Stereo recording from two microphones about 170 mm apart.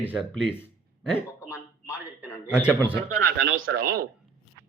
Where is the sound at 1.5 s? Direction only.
5° right (ahead or behind).